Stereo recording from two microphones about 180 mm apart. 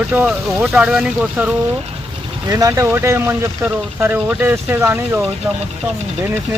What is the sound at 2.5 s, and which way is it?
Speech, 15° right (ahead or behind).